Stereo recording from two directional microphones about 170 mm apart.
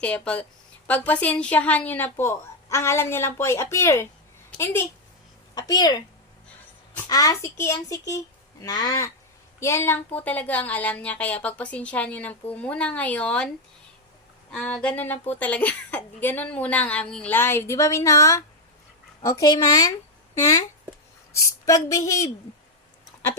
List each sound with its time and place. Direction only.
0.0 s a child's voice: 5° left (ahead or behind); by 6.0 s 25° left (ahead or behind)
7.1 s a child's voice: 20° left (ahead or behind)
14.5 s a child's voice: 5° left (ahead or behind)